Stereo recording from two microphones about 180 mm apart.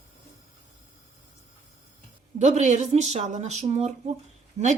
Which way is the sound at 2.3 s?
40° right (ahead or behind).